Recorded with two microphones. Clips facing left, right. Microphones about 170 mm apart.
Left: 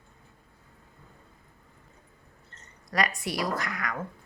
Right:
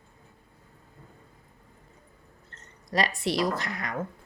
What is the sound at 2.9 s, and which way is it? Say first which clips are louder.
A woman's voice: right 2 dB; 25° right (ahead or behind).